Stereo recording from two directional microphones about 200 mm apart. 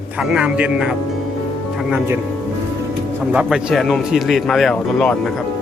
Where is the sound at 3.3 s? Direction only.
5° right (ahead or behind).